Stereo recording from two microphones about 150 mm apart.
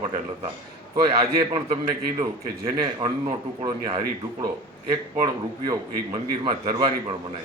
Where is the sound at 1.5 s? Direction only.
30° right (ahead or behind).